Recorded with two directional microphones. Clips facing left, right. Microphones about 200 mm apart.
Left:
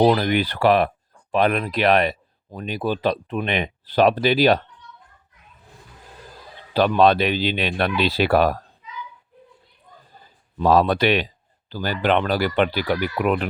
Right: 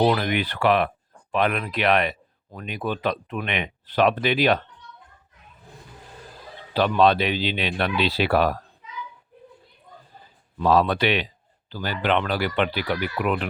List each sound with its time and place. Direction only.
0.0 s speech: 35° left (ahead or behind)
6.7 s speech: 45° left (ahead or behind)
10.6 s speech: 40° left (ahead or behind)